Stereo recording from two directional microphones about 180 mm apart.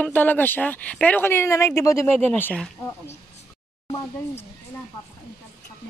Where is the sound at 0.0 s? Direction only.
10° left (ahead or behind).